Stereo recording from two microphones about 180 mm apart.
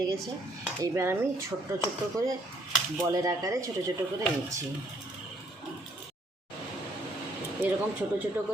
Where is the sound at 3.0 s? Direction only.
20° right (ahead or behind).